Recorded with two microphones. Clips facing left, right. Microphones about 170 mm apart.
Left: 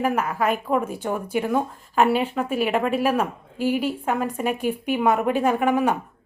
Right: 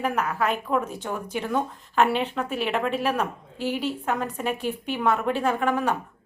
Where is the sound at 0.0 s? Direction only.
10° left (ahead or behind).